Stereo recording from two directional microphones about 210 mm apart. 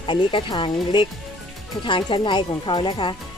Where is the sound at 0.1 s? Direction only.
25° left (ahead or behind).